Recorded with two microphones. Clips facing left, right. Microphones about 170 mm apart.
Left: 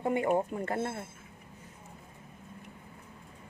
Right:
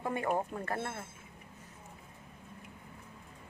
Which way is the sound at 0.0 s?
20° left (ahead or behind).